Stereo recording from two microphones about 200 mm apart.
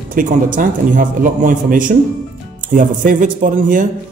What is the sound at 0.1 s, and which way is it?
Speech, 40° right (ahead or behind).